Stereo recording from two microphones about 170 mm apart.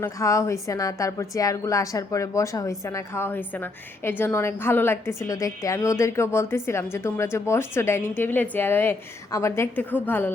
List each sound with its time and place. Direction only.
0.0 s a woman's voice: 15° left (ahead or behind)